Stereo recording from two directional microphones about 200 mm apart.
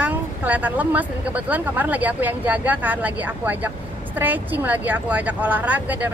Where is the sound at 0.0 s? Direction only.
5° right (ahead or behind).